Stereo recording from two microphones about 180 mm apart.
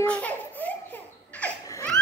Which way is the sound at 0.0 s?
5° left (ahead or behind).